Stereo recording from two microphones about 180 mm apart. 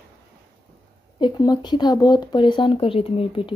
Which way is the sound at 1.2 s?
25° left (ahead or behind).